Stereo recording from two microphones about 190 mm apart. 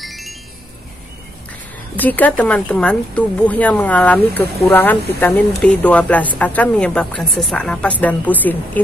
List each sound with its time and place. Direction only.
0.0 s music: centre (ahead or behind)
2.0 s speech: 10° left (ahead or behind)